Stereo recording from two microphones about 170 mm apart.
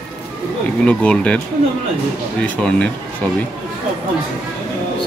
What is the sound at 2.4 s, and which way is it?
Speech, 5° left (ahead or behind).